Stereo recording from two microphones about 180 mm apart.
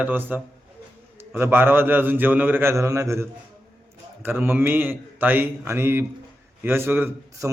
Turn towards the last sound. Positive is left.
turn(degrees=-15)  # may be behind; listen again after turning